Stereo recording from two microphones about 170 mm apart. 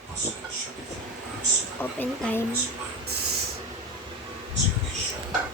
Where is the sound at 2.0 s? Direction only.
10° left (ahead or behind).